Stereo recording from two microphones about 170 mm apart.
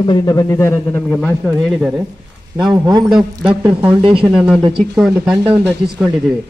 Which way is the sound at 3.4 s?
10° right (ahead or behind).